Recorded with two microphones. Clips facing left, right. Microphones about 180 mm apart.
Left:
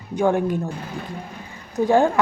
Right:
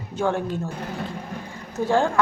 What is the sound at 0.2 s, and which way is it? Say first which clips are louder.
Speech: left 4 dB; 15° left (ahead or behind).